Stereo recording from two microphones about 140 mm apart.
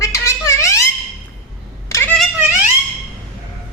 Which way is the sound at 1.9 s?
20° left (ahead or behind).